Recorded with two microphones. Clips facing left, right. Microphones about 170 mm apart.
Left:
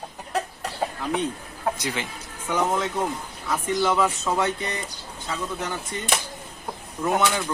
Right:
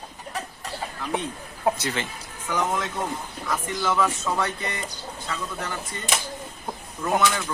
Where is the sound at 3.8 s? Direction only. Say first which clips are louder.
Left 1 dB; 20° left (ahead or behind).